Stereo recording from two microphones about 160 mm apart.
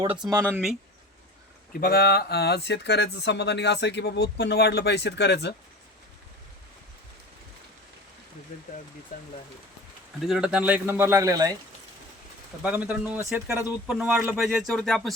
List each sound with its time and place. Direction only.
0.3 s a man's voice: 15° right (ahead or behind)
1.8 s speech: 70° left (ahead or behind); by 5.5 s 90° left
10.2 s a man's voice: 5° right (ahead or behind)
12.6 s a man's voice: 10° right (ahead or behind)